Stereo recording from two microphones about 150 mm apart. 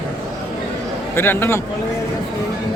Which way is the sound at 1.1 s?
15° left (ahead or behind).